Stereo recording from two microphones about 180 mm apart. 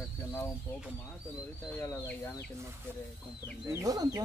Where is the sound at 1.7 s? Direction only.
15° left (ahead or behind).